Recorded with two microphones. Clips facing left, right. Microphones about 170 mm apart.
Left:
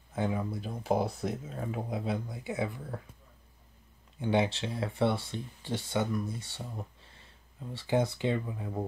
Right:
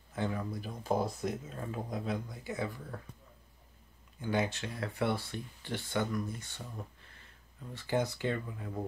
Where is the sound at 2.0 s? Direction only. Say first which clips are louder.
Left 3 dB; 25° left (ahead or behind).